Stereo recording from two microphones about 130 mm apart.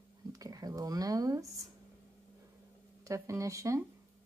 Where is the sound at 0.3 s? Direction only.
30° right (ahead or behind).